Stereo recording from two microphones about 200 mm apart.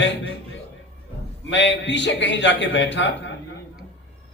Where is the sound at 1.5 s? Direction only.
60° left (ahead or behind).